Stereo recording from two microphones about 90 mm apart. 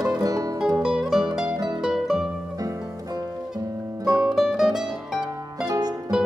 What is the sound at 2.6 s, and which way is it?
Music, 40° right (ahead or behind).